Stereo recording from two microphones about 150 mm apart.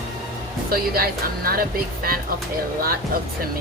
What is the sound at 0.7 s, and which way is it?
Speech, 75° right (ahead or behind).